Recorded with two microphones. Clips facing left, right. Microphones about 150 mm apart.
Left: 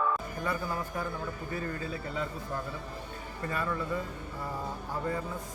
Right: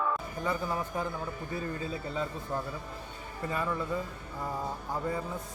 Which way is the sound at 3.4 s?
15° right (ahead or behind).